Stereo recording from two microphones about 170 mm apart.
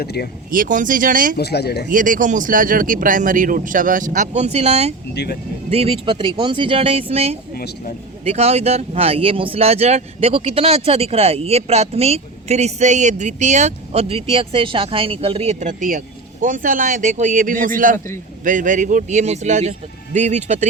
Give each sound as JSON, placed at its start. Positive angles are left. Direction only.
{"t": 0.0, "sound": "speech", "side_deg": 70}
{"t": 0.5, "sound": "speech", "side_deg": -50}
{"t": 1.4, "sound": "speech", "side_deg": 75}
{"t": 1.9, "sound": "speech", "side_deg": -50}
{"t": 5.1, "sound": "speech", "side_deg": 75}
{"t": 5.7, "sound": "speech", "side_deg": -35}
{"t": 7.5, "sound": "speech", "side_deg": 60}
{"t": 8.2, "sound": "speech", "side_deg": -40}
{"t": 17.9, "sound": "a man's voice", "side_deg": 15}
{"t": 18.4, "sound": "speech", "side_deg": -50}